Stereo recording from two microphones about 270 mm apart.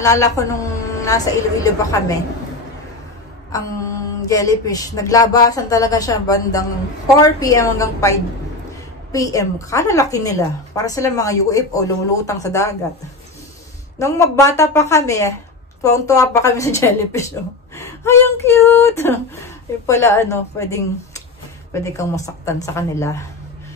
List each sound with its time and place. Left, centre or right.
0.0 s a woman's voice: centre
4.3 s a woman's voice: centre
13.9 s a woman's voice: centre